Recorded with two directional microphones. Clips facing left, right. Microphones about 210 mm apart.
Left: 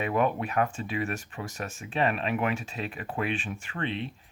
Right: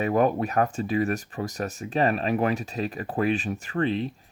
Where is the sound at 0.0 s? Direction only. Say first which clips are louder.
Right 4 dB; 40° right (ahead or behind).